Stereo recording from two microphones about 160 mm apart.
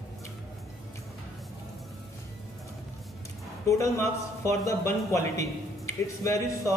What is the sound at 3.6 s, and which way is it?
Speech, 20° left (ahead or behind).